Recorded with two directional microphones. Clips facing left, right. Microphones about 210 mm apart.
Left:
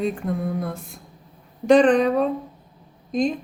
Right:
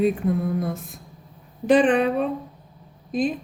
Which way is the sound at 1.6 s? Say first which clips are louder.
Left 2 dB; 5° right (ahead or behind).